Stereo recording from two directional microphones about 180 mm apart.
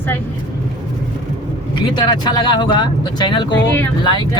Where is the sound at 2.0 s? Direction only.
25° left (ahead or behind).